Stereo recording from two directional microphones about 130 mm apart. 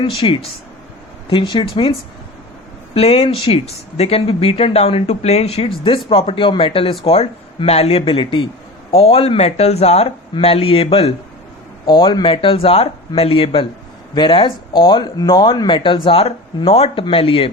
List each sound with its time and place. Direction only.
0.0 s speech: 45° left (ahead or behind)
8.9 s speech: 50° left (ahead or behind)
11.9 s speech: 35° left (ahead or behind)